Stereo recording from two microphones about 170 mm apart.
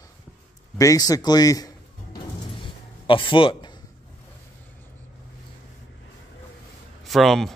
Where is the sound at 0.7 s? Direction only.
20° left (ahead or behind).